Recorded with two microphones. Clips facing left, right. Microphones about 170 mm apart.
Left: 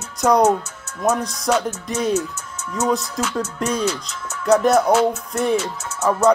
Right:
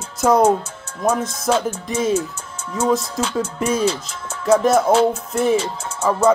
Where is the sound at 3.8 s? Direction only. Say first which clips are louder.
Right 3 dB; 30° right (ahead or behind).